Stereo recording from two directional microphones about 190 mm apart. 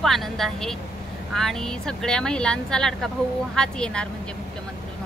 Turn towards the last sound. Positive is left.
turn(degrees=5)  # may be behind; listen again after turning